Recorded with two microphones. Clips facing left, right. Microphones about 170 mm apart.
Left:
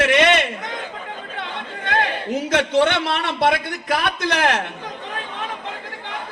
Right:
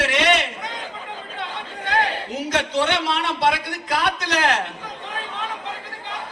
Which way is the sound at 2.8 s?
55° left (ahead or behind).